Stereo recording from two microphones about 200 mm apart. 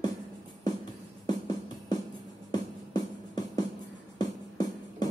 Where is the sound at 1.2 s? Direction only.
20° left (ahead or behind).